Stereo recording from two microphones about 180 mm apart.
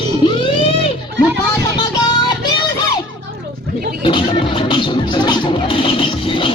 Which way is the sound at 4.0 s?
25° left (ahead or behind).